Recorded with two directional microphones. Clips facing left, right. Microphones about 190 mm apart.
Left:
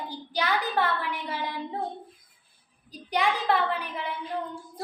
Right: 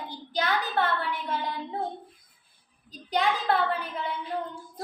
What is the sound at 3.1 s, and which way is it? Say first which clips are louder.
Child singing: even; 10° left (ahead or behind).